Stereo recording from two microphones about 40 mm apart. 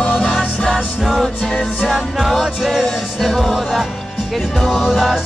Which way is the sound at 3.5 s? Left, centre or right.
Centre.